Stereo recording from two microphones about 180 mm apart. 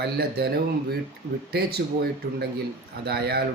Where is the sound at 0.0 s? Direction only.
65° right (ahead or behind).